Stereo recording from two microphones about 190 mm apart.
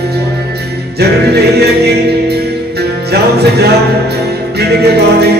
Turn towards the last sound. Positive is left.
turn(degrees=-55)  # may be behind; listen again after turning